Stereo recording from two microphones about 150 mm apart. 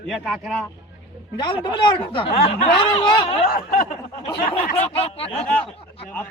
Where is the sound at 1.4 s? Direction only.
35° left (ahead or behind).